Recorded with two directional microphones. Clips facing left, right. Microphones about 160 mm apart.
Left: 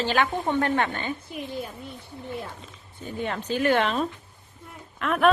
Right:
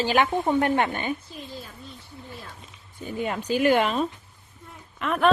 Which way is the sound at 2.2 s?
20° left (ahead or behind).